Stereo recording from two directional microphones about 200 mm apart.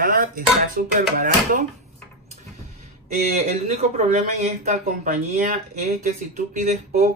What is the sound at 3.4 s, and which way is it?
Speech, 35° right (ahead or behind).